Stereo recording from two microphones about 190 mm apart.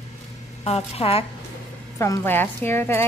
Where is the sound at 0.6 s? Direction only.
30° left (ahead or behind).